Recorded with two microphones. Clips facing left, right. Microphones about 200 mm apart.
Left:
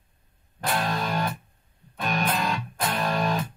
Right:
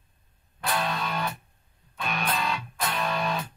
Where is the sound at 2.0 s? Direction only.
40° left (ahead or behind).